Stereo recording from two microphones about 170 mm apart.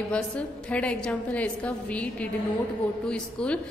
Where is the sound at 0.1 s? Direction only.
5° left (ahead or behind).